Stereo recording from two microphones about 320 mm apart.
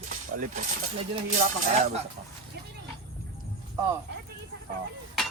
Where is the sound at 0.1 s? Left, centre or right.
Right.